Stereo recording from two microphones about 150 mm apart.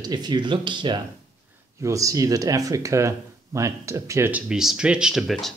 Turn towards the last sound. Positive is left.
turn(degrees=0)  # may be behind; listen again after turning